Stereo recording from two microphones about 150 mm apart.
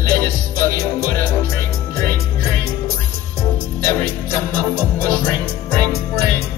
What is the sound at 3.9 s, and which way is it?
Music, 15° left (ahead or behind).